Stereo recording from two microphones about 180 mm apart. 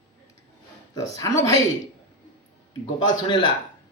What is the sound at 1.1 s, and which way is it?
Speech, 20° left (ahead or behind).